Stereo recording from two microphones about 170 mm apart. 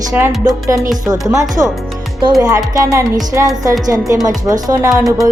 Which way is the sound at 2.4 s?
20° right (ahead or behind).